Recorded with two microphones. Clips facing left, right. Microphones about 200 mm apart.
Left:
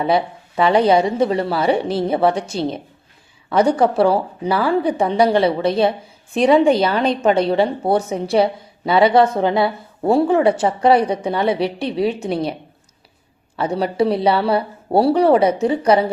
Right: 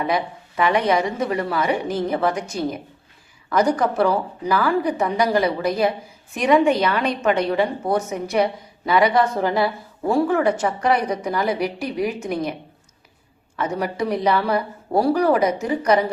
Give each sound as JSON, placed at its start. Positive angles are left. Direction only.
{"t": 0.0, "sound": "a woman's voice", "side_deg": 30}
{"t": 13.6, "sound": "speech", "side_deg": 30}